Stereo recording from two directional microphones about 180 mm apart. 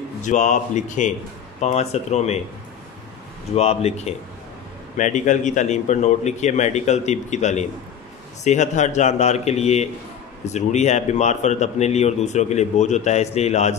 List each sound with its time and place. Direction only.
0.2 s a man's voice: 40° left (ahead or behind)
3.5 s a man's voice: 35° left (ahead or behind)